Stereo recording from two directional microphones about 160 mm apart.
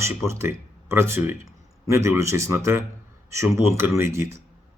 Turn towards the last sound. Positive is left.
turn(degrees=-15)  # may be behind; listen again after turning